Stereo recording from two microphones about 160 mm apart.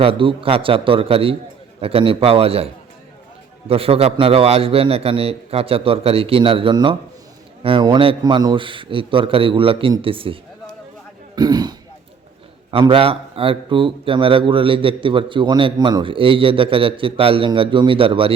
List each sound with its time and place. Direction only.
0.0 s a man's voice: 35° right (ahead or behind)
3.7 s a man's voice: 40° right (ahead or behind)
11.3 s speech: 25° right (ahead or behind)
12.7 s a man's voice: 35° right (ahead or behind)